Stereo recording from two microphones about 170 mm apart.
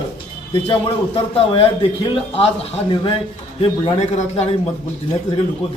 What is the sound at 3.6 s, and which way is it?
Speech, 35° left (ahead or behind).